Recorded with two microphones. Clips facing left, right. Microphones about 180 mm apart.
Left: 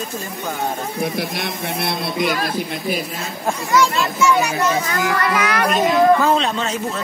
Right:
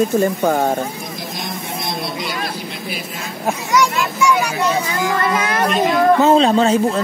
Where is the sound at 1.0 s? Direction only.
65° left (ahead or behind).